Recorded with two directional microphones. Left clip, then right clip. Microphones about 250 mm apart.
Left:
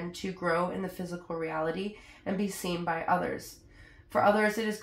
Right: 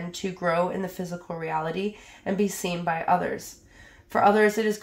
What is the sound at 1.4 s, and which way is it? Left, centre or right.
Speech, right.